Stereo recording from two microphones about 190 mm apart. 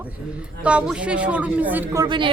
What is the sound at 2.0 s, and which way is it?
Speech, 25° right (ahead or behind).